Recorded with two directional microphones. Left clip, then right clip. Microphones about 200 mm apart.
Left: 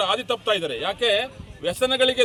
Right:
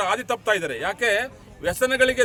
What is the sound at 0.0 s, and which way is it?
A man's voice, 15° right (ahead or behind).